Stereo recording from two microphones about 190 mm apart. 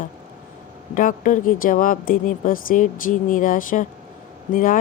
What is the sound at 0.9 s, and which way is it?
A woman's voice, 45° left (ahead or behind).